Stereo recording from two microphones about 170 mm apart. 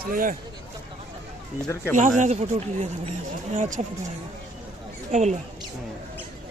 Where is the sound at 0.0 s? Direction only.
55° right (ahead or behind).